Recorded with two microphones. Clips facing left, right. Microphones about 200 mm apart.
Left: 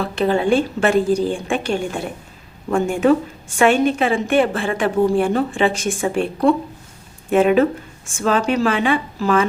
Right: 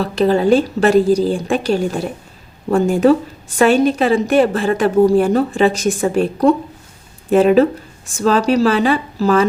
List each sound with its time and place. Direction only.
0.0 s a woman's voice: 40° right (ahead or behind)